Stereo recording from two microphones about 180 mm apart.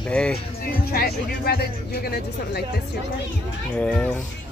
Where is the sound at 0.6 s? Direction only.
55° left (ahead or behind).